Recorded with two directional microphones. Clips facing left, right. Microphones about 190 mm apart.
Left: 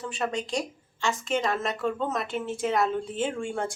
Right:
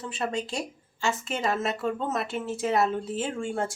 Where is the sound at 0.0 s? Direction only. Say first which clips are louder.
Even; centre (ahead or behind).